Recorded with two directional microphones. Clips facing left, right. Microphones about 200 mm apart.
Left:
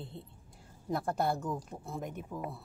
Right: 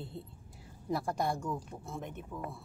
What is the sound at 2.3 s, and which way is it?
Speech, 30° left (ahead or behind).